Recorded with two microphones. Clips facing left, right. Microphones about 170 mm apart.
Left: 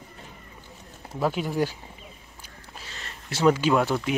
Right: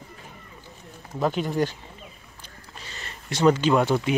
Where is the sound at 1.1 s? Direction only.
5° left (ahead or behind).